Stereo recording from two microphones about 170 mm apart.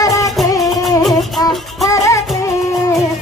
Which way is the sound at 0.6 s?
Centre (ahead or behind).